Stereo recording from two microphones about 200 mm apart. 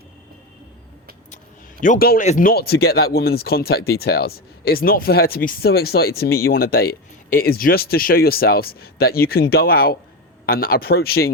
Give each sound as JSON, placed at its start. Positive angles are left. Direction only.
{"t": 1.8, "sound": "speech", "side_deg": 45}